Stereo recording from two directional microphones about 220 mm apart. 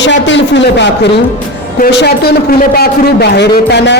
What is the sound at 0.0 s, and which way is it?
A man's voice, 55° left (ahead or behind).